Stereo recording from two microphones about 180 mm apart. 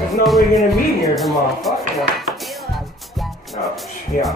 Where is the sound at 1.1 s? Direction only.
Centre (ahead or behind).